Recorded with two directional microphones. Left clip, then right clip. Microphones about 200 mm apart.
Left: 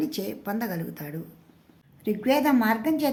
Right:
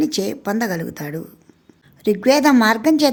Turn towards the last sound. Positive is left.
turn(degrees=-50)  # may be behind; listen again after turning